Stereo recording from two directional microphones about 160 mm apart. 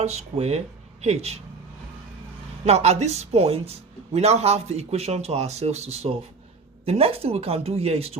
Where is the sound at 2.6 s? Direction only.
40° right (ahead or behind).